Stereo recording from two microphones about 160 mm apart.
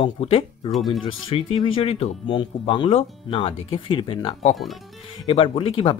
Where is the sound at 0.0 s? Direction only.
35° left (ahead or behind).